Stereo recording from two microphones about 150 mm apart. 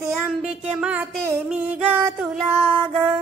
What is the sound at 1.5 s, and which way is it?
Music, 5° right (ahead or behind).